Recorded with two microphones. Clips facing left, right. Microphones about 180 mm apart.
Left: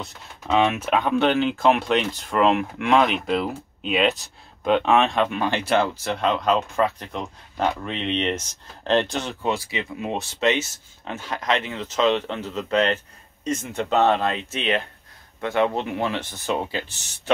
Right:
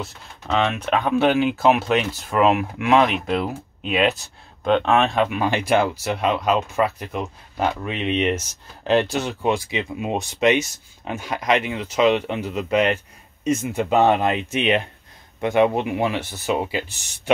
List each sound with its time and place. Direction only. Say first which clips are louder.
0.0 s speech: right 3 dB; 5° left (ahead or behind); by 16.8 s 10° right (ahead or behind)